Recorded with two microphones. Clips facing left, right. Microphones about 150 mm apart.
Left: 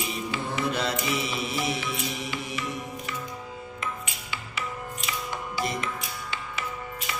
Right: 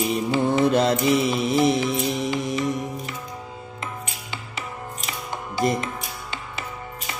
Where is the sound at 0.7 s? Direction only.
45° right (ahead or behind).